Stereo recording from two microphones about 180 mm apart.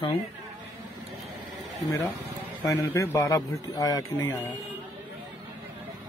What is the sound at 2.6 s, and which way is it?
A man's voice, 15° left (ahead or behind).